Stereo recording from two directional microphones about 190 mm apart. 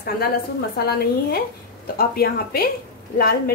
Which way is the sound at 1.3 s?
50° left (ahead or behind).